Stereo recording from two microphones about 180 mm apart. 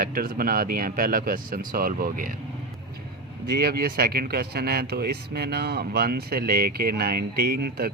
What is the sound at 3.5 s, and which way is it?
Speech, 60° right (ahead or behind).